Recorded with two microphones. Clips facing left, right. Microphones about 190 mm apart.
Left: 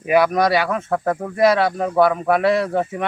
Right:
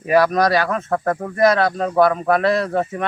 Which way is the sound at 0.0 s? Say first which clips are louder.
Even; 10° left (ahead or behind).